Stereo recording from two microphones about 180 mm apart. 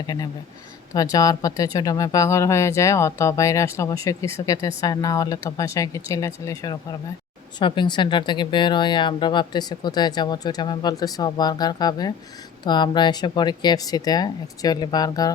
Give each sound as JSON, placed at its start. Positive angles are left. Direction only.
{"t": 0.9, "sound": "speech", "side_deg": 20}